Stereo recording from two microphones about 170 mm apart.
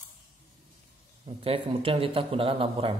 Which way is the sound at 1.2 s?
35° right (ahead or behind).